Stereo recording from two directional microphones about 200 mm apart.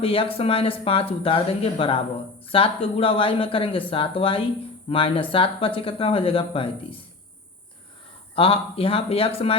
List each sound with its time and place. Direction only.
0.0 s speech: 25° left (ahead or behind)
8.4 s speech: 30° left (ahead or behind)